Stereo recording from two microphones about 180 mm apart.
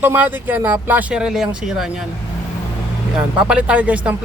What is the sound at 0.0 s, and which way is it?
Speech, 10° right (ahead or behind).